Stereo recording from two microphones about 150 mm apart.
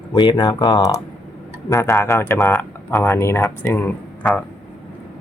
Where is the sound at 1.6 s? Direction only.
15° left (ahead or behind).